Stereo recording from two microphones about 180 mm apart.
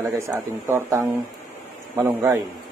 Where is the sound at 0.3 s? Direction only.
15° right (ahead or behind).